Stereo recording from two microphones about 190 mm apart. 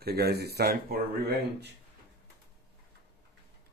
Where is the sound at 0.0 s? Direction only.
55° right (ahead or behind).